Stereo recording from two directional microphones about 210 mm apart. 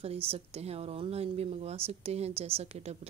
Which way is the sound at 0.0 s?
30° right (ahead or behind).